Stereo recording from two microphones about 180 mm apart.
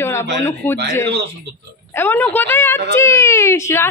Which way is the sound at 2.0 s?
10° left (ahead or behind).